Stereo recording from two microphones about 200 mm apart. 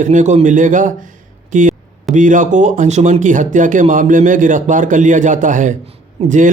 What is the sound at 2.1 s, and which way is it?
Speech, 40° right (ahead or behind).